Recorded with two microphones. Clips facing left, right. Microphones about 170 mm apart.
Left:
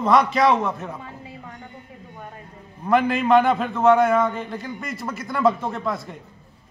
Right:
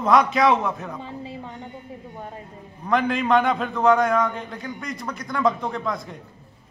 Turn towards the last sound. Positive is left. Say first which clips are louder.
# left 1 dB
turn(degrees=5)  # may be behind; listen again after turning